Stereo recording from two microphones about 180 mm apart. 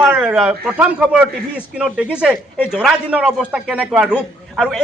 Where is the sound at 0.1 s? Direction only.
5° right (ahead or behind).